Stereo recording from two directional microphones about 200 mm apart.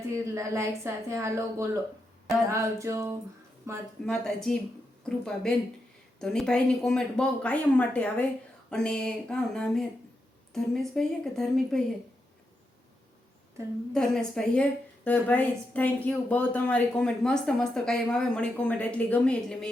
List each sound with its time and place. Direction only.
0.3 s a woman's voice: 15° right (ahead or behind)
4.0 s speech: 5° left (ahead or behind)
13.9 s speech: 5° left (ahead or behind)